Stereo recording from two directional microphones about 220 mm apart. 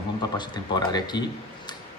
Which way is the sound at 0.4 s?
20° left (ahead or behind).